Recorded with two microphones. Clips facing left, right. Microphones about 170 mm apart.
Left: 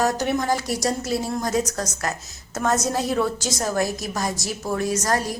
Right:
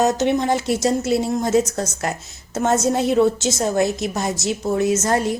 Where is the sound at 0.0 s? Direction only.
20° right (ahead or behind).